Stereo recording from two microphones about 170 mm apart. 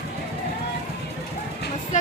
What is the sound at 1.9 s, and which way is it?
Speech, 45° left (ahead or behind).